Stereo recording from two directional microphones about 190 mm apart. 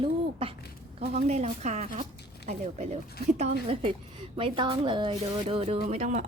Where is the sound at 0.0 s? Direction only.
30° right (ahead or behind).